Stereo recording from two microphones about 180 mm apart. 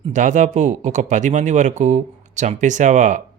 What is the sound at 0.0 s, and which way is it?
Speech, 45° right (ahead or behind).